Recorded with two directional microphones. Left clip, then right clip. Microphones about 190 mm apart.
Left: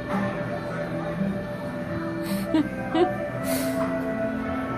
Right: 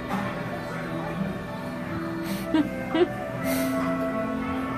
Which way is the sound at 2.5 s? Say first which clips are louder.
Even; 15° right (ahead or behind).